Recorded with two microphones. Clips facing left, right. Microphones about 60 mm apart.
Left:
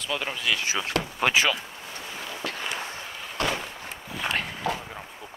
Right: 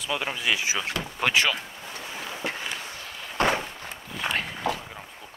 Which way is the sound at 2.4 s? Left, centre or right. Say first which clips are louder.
Left 1 dB; right.